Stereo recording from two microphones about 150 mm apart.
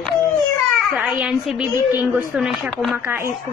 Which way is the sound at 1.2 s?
5° right (ahead or behind).